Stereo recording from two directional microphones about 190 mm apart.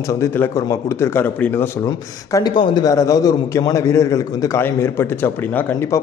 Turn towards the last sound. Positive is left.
turn(degrees=15)  # may be behind; listen again after turning